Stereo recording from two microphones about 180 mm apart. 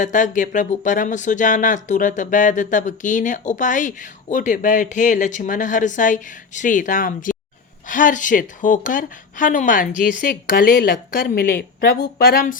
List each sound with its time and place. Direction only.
0.0 s speech: 45° left (ahead or behind)